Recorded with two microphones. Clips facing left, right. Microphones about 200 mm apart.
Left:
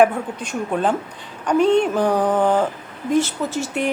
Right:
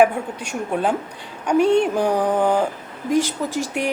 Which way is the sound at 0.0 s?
10° right (ahead or behind).